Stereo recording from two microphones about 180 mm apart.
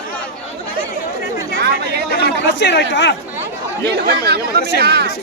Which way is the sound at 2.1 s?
70° left (ahead or behind).